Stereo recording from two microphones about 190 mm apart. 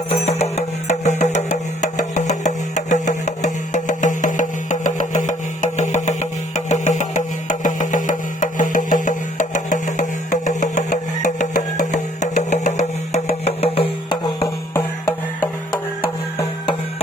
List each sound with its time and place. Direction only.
0.1 s music: 35° left (ahead or behind)